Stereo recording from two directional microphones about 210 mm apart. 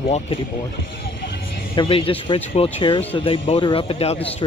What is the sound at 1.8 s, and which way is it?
Speech, 25° left (ahead or behind).